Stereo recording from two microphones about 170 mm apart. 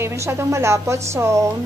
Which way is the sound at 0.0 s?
15° right (ahead or behind).